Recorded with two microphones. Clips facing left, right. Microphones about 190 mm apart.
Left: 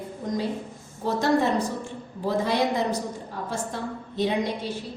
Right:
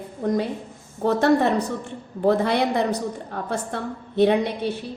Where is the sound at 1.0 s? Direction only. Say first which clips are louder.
Right 4 dB; 65° right (ahead or behind).